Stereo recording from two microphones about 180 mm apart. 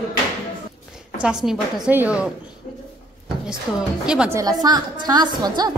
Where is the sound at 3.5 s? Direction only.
5° right (ahead or behind).